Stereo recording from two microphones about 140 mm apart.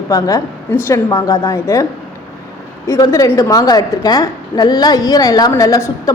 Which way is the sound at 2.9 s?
25° left (ahead or behind).